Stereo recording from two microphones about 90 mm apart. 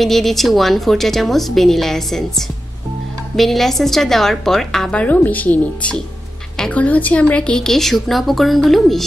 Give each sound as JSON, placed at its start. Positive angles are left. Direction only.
{"t": 0.0, "sound": "a woman's voice", "side_deg": 5}
{"t": 5.0, "sound": "a woman's voice", "side_deg": 20}